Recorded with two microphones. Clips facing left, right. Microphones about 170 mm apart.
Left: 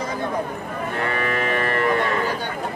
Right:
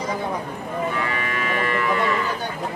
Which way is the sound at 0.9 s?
55° left (ahead or behind).